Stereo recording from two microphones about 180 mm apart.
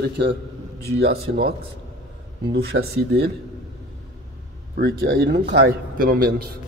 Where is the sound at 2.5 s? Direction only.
70° right (ahead or behind).